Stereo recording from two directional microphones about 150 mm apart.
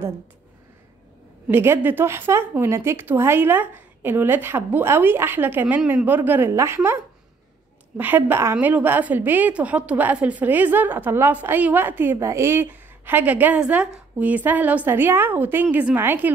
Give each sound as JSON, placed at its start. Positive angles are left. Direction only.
{"t": 1.5, "sound": "a woman's voice", "side_deg": -15}
{"t": 8.0, "sound": "a woman's voice", "side_deg": -15}